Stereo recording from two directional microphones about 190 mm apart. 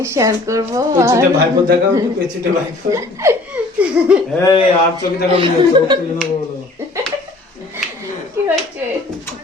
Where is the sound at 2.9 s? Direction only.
15° right (ahead or behind).